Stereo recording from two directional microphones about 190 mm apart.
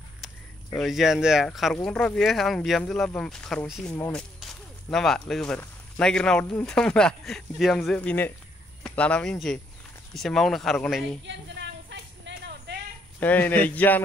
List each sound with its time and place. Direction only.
0.7 s speech: centre (ahead or behind)
11.2 s a sound: 70° right (ahead or behind)
13.2 s speech: 10° left (ahead or behind)